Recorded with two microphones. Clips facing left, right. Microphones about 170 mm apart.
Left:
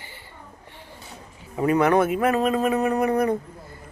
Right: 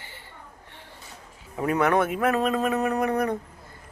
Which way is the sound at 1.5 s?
Centre (ahead or behind).